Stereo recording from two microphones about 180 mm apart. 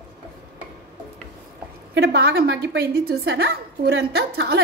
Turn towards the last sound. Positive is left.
turn(degrees=-65)  # may be behind; listen again after turning